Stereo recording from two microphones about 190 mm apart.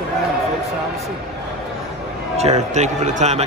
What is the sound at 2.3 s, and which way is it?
A man's voice, 35° right (ahead or behind).